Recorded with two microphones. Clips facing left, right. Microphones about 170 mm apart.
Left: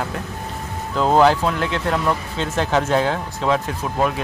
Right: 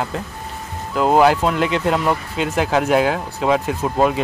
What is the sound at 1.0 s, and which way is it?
Speech, 10° right (ahead or behind).